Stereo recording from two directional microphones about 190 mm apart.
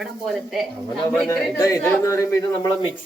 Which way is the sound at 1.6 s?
15° left (ahead or behind).